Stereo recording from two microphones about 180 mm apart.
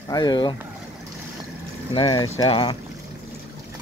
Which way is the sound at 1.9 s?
30° left (ahead or behind).